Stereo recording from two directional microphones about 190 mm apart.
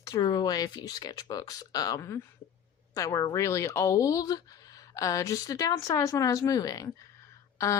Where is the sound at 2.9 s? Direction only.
20° left (ahead or behind).